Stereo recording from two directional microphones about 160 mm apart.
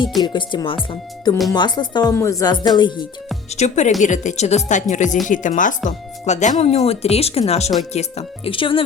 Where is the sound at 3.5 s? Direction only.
45° left (ahead or behind).